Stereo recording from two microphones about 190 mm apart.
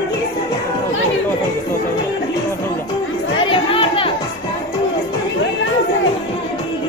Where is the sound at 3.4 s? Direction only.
30° left (ahead or behind).